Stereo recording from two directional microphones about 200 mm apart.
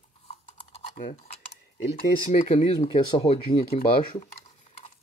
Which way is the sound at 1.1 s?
30° left (ahead or behind).